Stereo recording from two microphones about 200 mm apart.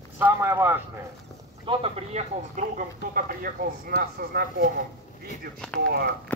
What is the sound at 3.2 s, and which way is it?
Speech, 45° right (ahead or behind).